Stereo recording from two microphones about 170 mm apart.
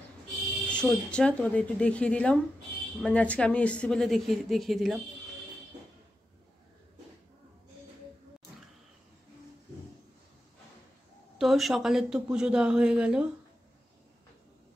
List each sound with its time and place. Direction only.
0.7 s a woman's voice: 5° left (ahead or behind)
11.3 s speech: centre (ahead or behind)